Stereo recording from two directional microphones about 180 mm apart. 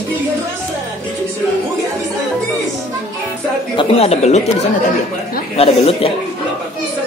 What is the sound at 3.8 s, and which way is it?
Speech, 35° left (ahead or behind).